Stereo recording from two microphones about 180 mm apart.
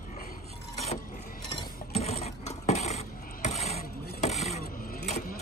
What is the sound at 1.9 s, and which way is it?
Mechanisms, 35° left (ahead or behind).